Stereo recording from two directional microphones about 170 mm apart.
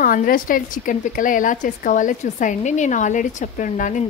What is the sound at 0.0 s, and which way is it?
A woman's voice, 55° left (ahead or behind).